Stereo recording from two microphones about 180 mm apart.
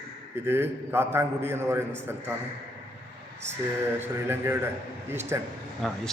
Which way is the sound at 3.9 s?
10° right (ahead or behind).